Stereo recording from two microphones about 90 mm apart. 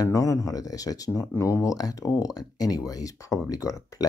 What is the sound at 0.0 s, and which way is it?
Speech, 40° left (ahead or behind).